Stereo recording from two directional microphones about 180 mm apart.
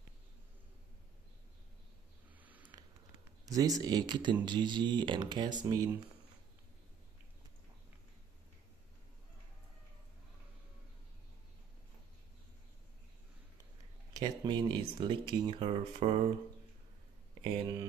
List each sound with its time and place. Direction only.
3.4 s speech: 20° right (ahead or behind)
14.1 s speech: 25° right (ahead or behind)
17.4 s speech: 25° right (ahead or behind)